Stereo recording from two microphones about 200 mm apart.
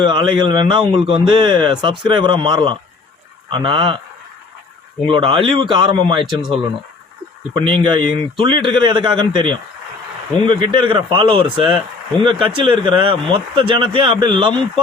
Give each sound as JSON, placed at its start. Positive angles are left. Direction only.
{"t": 0.1, "sound": "a man's voice", "side_deg": -25}
{"t": 5.0, "sound": "a man's voice", "side_deg": -25}
{"t": 6.3, "sound": "speech", "side_deg": 0}
{"t": 7.5, "sound": "a man's voice", "side_deg": -25}